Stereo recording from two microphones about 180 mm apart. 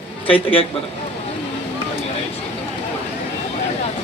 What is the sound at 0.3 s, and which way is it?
Speech, 30° left (ahead or behind).